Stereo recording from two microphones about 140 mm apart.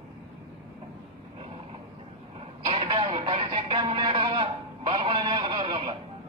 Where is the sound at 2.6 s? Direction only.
40° right (ahead or behind).